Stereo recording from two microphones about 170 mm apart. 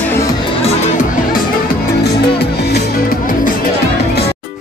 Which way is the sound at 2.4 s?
70° left (ahead or behind).